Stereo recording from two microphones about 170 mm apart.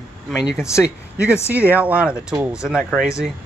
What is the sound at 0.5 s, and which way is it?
Speech, 15° left (ahead or behind).